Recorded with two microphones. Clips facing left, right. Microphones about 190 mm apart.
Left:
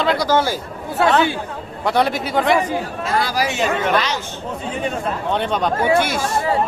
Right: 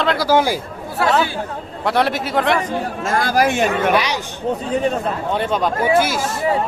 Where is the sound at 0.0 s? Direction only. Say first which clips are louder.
Even; centre (ahead or behind).